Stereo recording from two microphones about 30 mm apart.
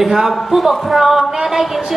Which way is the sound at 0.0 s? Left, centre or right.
Centre.